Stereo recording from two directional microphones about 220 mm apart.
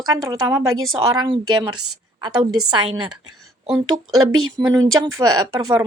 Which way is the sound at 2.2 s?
20° right (ahead or behind).